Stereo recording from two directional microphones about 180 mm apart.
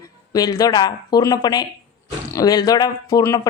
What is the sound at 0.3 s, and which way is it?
A woman's voice, 20° left (ahead or behind).